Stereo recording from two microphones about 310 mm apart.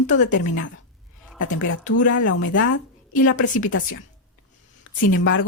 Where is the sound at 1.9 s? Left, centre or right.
Left.